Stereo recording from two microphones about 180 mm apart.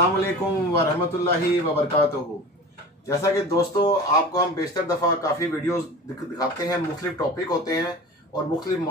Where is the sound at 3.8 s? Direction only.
20° left (ahead or behind).